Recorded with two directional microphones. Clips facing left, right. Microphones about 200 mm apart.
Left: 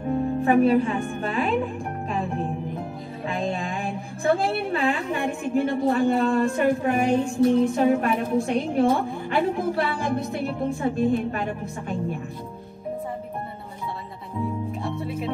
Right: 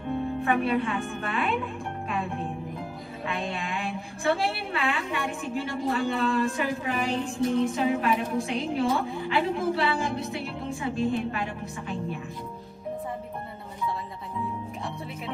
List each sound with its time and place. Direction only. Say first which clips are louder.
0.1 s speech: left 6 dB; 35° left (ahead or behind)
4.4 s a woman's voice: left 4 dB; 50° left (ahead or behind)
4.6 s a woman's voice: left 5 dB; 35° left (ahead or behind)